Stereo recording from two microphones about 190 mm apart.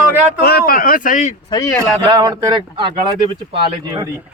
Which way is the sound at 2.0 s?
25° right (ahead or behind).